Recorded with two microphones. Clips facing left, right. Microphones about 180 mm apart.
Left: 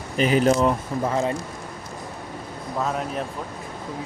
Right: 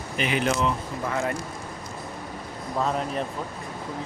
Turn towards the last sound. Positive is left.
turn(degrees=0)  # may be behind; listen again after turning